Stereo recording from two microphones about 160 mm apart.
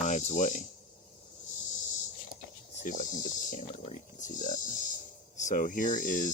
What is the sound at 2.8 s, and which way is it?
Speech, 55° left (ahead or behind).